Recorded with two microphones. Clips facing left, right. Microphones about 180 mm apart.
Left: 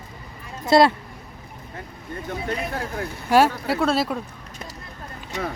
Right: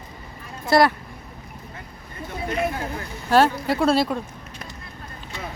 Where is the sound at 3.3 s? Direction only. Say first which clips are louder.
Even; 10° left (ahead or behind).